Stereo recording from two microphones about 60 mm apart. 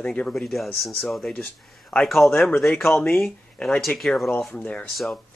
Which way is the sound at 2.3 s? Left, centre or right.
Left.